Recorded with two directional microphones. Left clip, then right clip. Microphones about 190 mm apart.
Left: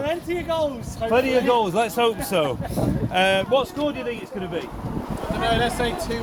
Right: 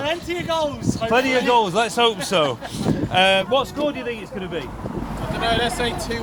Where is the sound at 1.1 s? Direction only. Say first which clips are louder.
Right 2 dB; 15° right (ahead or behind).